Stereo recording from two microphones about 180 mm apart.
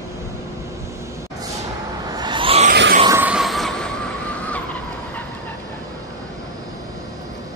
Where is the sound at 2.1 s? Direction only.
25° right (ahead or behind).